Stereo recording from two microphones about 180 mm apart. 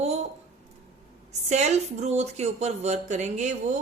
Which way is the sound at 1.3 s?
40° right (ahead or behind).